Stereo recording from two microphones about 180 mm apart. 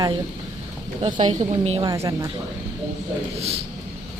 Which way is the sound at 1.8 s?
15° right (ahead or behind).